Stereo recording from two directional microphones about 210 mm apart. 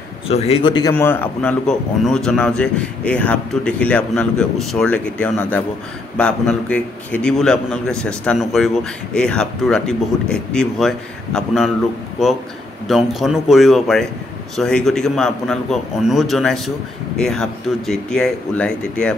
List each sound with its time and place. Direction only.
0.3 s a man's voice: 30° left (ahead or behind)
0.9 s a man's voice: 10° left (ahead or behind)
12.8 s a man's voice: centre (ahead or behind)